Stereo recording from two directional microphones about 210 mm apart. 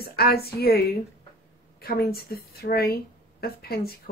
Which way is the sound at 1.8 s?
45° left (ahead or behind).